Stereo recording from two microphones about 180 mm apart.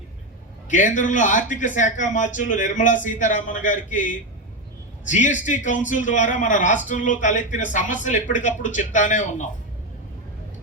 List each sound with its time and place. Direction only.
0.7 s speech: 45° left (ahead or behind)